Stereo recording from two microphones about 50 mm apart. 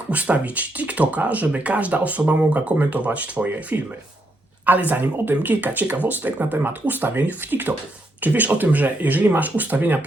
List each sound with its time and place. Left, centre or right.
0.1 s speech: right